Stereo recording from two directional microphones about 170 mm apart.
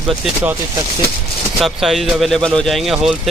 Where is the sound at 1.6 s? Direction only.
Centre (ahead or behind).